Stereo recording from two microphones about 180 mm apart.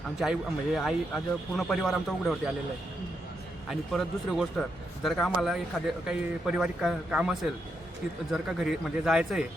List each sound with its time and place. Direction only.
0.2 s speech: centre (ahead or behind)
3.7 s speech: centre (ahead or behind)